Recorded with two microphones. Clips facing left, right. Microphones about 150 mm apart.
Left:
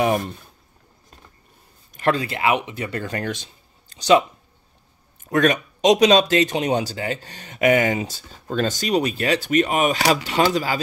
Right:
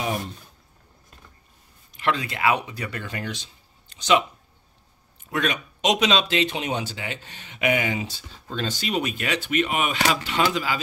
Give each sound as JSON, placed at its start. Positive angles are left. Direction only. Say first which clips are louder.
{"t": 2.0, "sound": "speech", "louder": "left 4 dB", "side_deg": 40}
{"t": 3.0, "sound": "speech", "louder": "left 6 dB", "side_deg": 45}
{"t": 3.9, "sound": "a sound", "louder": "left 5 dB", "side_deg": 35}
{"t": 5.3, "sound": "speech", "louder": "left 8 dB", "side_deg": 45}